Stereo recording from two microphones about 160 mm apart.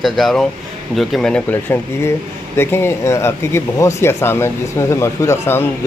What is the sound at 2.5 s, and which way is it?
Speech, 15° left (ahead or behind).